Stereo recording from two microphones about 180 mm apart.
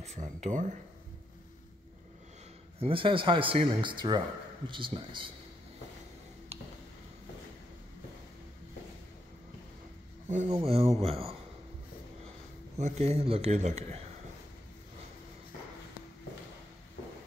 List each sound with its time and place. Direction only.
0.0 s speech: 40° right (ahead or behind)
2.8 s speech: 30° right (ahead or behind)
10.2 s speech: 40° right (ahead or behind)
12.7 s speech: 40° right (ahead or behind)